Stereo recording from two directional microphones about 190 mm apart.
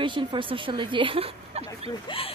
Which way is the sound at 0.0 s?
25° right (ahead or behind).